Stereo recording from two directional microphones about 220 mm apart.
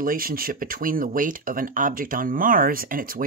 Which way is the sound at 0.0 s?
40° right (ahead or behind).